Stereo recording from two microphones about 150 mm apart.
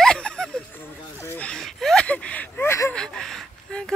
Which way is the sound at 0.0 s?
5° left (ahead or behind).